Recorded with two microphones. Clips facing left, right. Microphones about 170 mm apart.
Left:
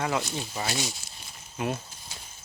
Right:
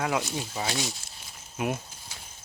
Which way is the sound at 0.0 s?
5° right (ahead or behind).